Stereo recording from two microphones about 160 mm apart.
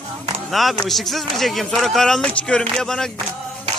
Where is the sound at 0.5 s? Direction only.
Centre (ahead or behind).